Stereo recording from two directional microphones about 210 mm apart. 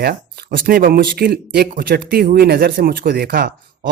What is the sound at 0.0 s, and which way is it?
Speech, 50° right (ahead or behind).